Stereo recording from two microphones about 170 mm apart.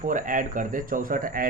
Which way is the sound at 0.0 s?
50° right (ahead or behind).